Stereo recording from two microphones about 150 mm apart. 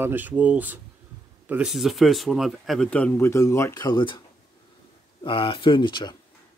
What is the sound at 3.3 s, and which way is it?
Speech, 20° left (ahead or behind).